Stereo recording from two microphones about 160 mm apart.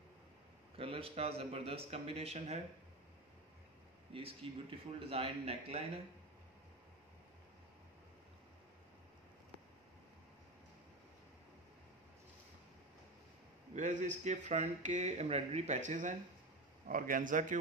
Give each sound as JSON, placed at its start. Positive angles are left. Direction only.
{"t": 0.7, "sound": "speech", "side_deg": -35}
{"t": 4.1, "sound": "speech", "side_deg": -35}
{"t": 13.7, "sound": "a man's voice", "side_deg": -50}